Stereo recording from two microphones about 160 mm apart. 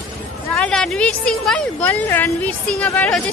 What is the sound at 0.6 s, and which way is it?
A woman's voice, 5° left (ahead or behind).